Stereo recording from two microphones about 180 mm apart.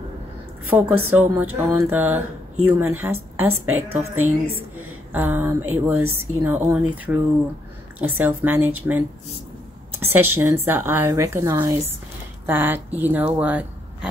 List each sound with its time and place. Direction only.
0.7 s speech: 10° right (ahead or behind)